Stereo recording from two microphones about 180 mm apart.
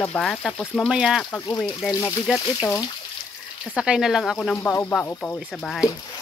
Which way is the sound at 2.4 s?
20° left (ahead or behind).